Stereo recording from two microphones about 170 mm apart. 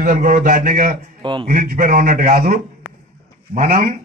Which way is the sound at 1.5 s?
50° right (ahead or behind).